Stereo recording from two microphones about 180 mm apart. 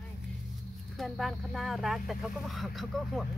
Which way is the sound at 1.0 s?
Centre (ahead or behind).